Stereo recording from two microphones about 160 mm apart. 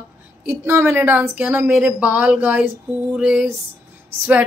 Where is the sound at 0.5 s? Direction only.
15° right (ahead or behind).